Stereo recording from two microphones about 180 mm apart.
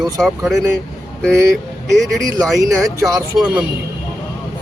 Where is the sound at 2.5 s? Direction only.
15° right (ahead or behind).